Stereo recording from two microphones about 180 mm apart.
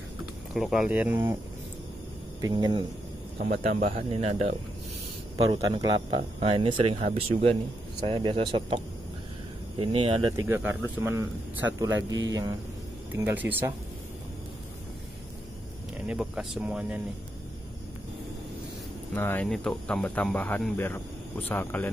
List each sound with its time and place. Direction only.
0.6 s speech: centre (ahead or behind)
2.4 s speech: 25° right (ahead or behind)
3.3 s speech: 50° right (ahead or behind)
5.4 s speech: 20° right (ahead or behind)
10.3 s speech: 10° right (ahead or behind)
16.1 s speech: 5° right (ahead or behind)
19.1 s speech: 10° left (ahead or behind)